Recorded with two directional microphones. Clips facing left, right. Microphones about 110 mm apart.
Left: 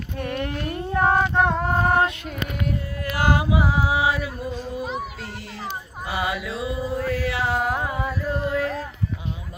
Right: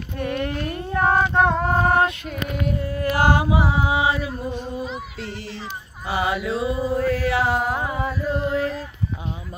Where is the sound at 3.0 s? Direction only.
35° right (ahead or behind).